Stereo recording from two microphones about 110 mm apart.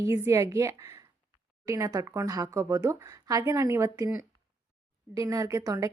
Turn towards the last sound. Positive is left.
turn(degrees=-30)  # may be behind; listen again after turning